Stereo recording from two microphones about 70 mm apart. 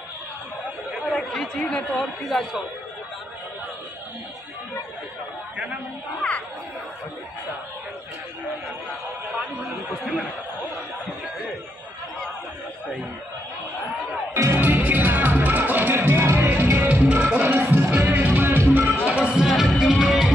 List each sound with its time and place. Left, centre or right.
1.1 s chatter: centre
1.6 s speech: centre
2.0 s speech: centre
14.3 s music: right
14.6 s music: right
16.7 s music: right
17.4 s music: right
19.3 s music: centre